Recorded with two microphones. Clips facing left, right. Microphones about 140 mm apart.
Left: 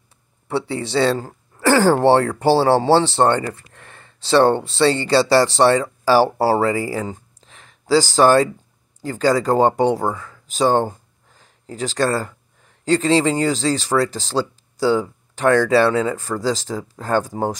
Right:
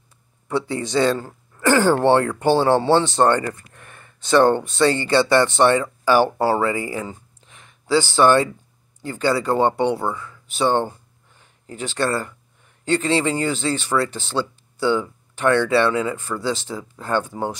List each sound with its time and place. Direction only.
0.5 s speech: 30° left (ahead or behind)
1.2 s a sound: 35° left (ahead or behind)
2.0 s speech: 35° left (ahead or behind)